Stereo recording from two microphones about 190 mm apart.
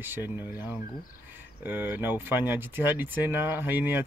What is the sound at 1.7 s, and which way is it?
Speech, 10° right (ahead or behind).